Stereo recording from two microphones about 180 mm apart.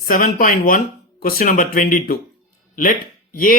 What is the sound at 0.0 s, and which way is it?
Speech, 50° left (ahead or behind).